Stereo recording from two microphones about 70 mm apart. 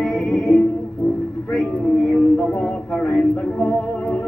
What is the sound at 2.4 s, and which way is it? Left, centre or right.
Speech, centre.